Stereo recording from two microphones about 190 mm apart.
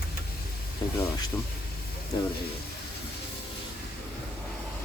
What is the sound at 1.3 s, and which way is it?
Speech, 20° left (ahead or behind).